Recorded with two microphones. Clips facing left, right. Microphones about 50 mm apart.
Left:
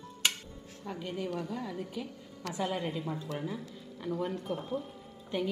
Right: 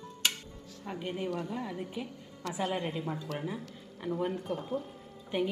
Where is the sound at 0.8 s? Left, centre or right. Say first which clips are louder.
Right 1 dB; centre.